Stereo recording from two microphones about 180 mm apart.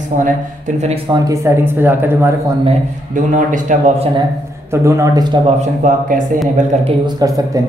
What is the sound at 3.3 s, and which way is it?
Speech, 45° right (ahead or behind).